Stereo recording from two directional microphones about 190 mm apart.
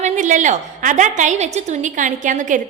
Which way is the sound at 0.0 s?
40° right (ahead or behind).